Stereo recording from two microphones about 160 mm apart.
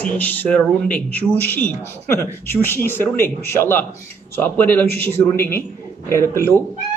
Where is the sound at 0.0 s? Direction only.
10° left (ahead or behind).